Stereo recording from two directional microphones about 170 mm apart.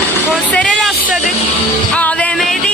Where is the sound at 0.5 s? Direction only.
5° left (ahead or behind).